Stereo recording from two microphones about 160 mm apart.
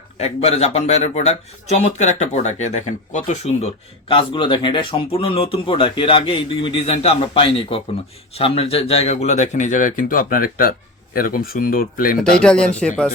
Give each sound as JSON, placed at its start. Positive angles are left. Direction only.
{"t": 0.2, "sound": "speech", "side_deg": 40}
{"t": 4.1, "sound": "speech", "side_deg": 30}
{"t": 12.4, "sound": "speech", "side_deg": 5}